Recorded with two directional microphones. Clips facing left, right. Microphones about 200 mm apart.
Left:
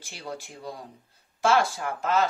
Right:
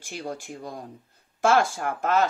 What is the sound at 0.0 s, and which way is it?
Speech, 45° right (ahead or behind).